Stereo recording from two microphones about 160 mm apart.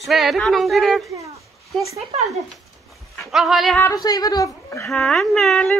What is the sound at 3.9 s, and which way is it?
A woman's voice, 25° left (ahead or behind).